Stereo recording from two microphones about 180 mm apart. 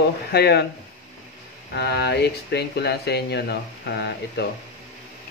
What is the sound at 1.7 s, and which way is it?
Speech, 65° left (ahead or behind).